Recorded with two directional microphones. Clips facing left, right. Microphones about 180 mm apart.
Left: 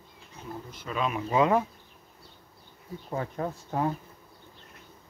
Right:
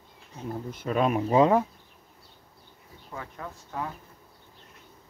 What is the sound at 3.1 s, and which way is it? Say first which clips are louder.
Speech: left 7 dB; 35° left (ahead or behind).